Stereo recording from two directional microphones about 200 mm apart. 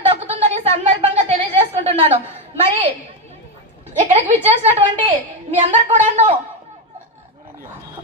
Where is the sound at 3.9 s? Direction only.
35° right (ahead or behind).